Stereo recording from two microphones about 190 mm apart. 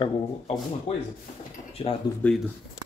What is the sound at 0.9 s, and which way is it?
Speech, 30° left (ahead or behind).